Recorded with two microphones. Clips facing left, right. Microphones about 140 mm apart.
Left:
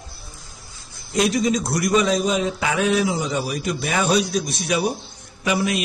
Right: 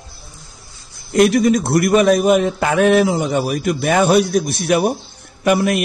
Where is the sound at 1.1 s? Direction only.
60° right (ahead or behind).